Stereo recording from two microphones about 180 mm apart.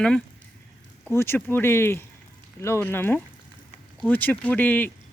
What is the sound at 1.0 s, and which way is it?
Speech, 15° left (ahead or behind).